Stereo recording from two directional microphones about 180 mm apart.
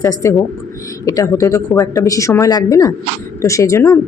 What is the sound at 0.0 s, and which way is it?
Speech, 15° left (ahead or behind).